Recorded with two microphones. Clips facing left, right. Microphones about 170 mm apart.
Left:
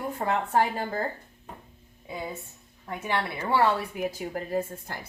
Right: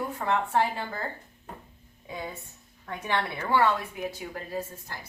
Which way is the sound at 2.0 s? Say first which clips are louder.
Left 2 dB; 10° left (ahead or behind).